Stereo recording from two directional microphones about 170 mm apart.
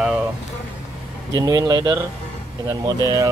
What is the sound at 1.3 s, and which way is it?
Speech, 20° right (ahead or behind).